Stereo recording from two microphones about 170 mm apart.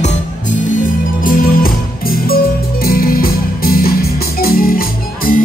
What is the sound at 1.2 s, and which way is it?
Music, 55° left (ahead or behind).